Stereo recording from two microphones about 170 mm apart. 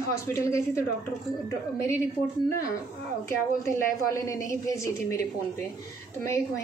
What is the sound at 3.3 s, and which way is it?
A woman's voice, 20° left (ahead or behind).